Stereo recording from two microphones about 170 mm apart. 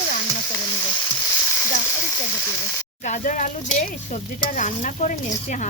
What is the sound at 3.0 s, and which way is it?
Speech, 50° left (ahead or behind).